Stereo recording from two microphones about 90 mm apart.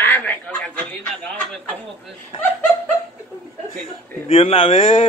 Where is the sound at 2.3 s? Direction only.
75° left (ahead or behind).